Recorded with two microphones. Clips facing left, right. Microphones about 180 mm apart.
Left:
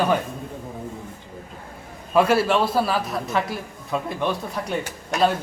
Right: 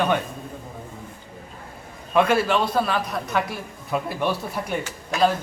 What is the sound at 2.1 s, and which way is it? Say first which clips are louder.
A man's voice: left 1 dB; 10° left (ahead or behind).